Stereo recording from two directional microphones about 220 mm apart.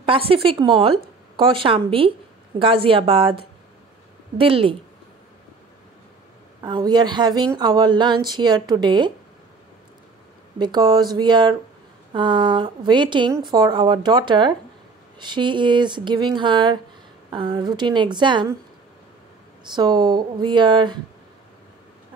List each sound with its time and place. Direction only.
0.0 s speech: 25° right (ahead or behind)
6.6 s speech: 20° right (ahead or behind)
10.6 s speech: 20° right (ahead or behind)
19.6 s speech: 20° right (ahead or behind)